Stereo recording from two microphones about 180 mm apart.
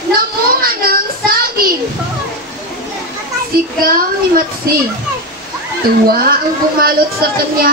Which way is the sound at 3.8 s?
55° right (ahead or behind).